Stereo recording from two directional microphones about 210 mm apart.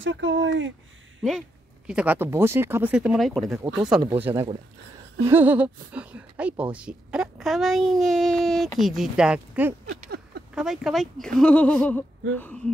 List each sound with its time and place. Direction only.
0.0 s speech: 60° right (ahead or behind)
1.9 s a child's voice: 5° right (ahead or behind)
9.9 s a sound: 50° right (ahead or behind)
10.5 s a child's voice: centre (ahead or behind)